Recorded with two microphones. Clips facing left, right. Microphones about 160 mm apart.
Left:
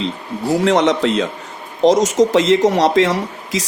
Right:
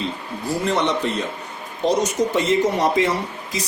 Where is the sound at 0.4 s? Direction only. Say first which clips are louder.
Left 7 dB; 90° left.